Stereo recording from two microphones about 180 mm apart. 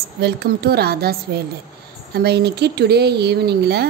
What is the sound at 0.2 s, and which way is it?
A woman's voice, 65° right (ahead or behind).